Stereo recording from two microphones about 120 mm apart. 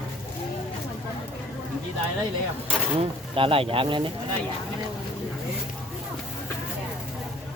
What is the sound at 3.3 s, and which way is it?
Speech, 50° right (ahead or behind).